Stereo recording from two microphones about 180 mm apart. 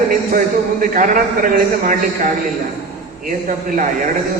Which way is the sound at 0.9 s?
50° right (ahead or behind).